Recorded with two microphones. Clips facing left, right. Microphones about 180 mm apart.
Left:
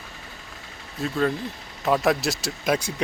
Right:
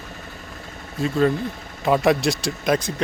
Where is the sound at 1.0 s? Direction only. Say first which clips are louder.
Right 5 dB; centre (ahead or behind).